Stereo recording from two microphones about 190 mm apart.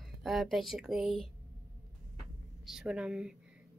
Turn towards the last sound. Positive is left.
turn(degrees=-5)  # may be behind; listen again after turning